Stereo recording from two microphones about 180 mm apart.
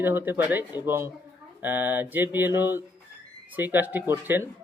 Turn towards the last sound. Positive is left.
turn(degrees=-10)  # may be behind; listen again after turning